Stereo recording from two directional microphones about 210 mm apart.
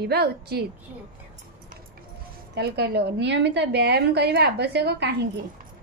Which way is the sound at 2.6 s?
50° right (ahead or behind).